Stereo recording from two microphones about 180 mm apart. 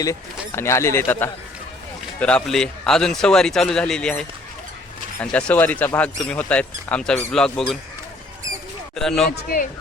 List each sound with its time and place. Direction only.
0.0 s speech: 15° left (ahead or behind)
9.0 s speech: centre (ahead or behind)
9.3 s speech: 55° left (ahead or behind)